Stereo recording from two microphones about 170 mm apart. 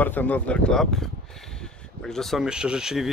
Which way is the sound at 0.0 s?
10° left (ahead or behind).